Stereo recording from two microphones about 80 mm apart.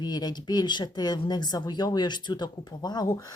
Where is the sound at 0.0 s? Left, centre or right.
Left.